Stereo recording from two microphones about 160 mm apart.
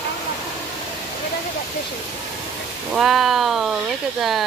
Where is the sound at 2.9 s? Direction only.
Centre (ahead or behind).